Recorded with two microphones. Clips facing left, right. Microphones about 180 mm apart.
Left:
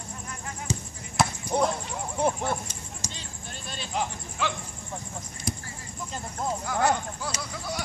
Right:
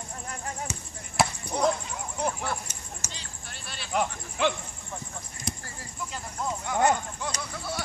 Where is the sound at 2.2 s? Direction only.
25° left (ahead or behind).